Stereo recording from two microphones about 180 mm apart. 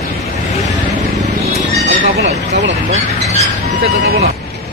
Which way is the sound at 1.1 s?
40° right (ahead or behind).